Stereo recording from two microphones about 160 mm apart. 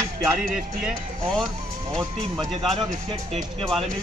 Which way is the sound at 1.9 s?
30° right (ahead or behind).